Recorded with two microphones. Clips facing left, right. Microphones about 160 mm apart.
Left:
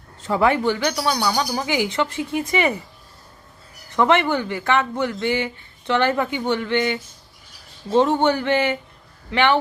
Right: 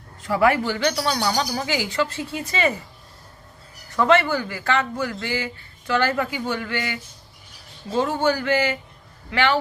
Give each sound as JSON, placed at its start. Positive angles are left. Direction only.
{"t": 0.2, "sound": "speech", "side_deg": 25}
{"t": 0.9, "sound": "speech", "side_deg": 10}
{"t": 3.9, "sound": "speech", "side_deg": 20}